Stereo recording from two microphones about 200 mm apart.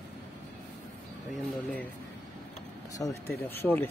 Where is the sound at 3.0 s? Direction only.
15° left (ahead or behind).